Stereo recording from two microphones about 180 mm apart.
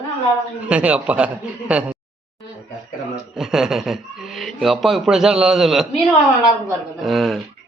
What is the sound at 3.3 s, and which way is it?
A man's voice, centre (ahead or behind).